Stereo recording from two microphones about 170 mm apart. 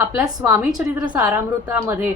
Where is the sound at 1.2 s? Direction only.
20° right (ahead or behind).